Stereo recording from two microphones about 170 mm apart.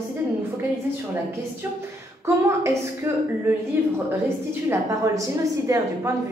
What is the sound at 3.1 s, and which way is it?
Speech, 15° right (ahead or behind).